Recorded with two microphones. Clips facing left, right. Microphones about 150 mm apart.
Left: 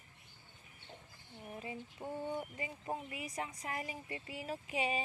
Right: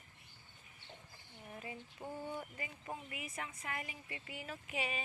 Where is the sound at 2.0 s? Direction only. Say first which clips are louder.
Left 4 dB; 25° left (ahead or behind).